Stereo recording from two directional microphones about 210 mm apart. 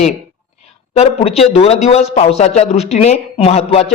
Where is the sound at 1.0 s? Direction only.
30° left (ahead or behind).